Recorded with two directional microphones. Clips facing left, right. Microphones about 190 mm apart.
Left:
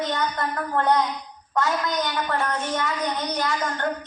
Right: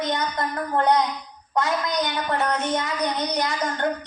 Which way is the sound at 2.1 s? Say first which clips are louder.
Right 1 dB; 20° right (ahead or behind).